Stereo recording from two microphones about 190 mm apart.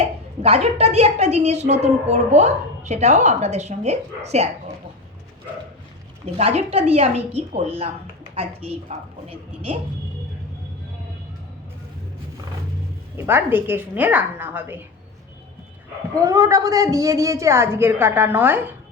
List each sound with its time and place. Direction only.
0.4 s a woman's voice: 30° right (ahead or behind)
6.3 s a woman's voice: 35° right (ahead or behind)
13.1 s a woman's voice: 10° right (ahead or behind)
16.2 s a woman's voice: 15° right (ahead or behind)